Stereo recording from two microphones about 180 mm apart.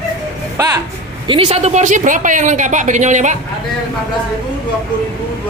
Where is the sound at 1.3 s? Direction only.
30° right (ahead or behind).